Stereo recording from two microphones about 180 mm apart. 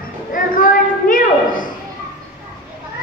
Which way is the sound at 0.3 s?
50° left (ahead or behind).